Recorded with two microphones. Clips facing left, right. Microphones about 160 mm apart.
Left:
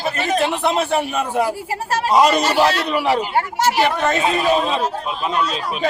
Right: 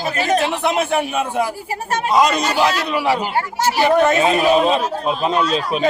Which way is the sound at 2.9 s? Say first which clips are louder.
Even; 5° right (ahead or behind).